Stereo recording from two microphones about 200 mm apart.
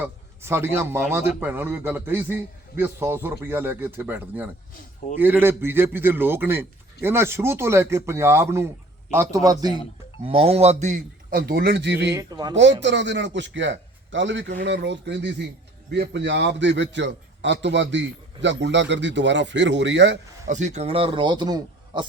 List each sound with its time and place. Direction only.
0.0 s a man's voice: 10° right (ahead or behind)
10.2 s a man's voice: 30° right (ahead or behind); by 12.1 s 60° right (ahead or behind)
12.1 s a man's voice: 20° right (ahead or behind)
12.5 s a man's voice: 65° right (ahead or behind)
20.5 s a man's voice: 35° right (ahead or behind)